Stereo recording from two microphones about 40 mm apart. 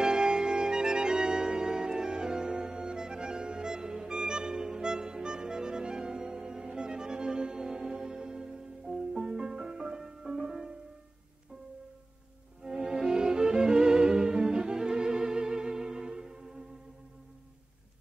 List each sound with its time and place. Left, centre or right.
0.0 s music: centre
12.6 s music: centre